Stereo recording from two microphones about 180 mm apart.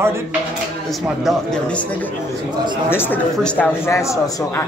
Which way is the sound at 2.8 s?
10° left (ahead or behind).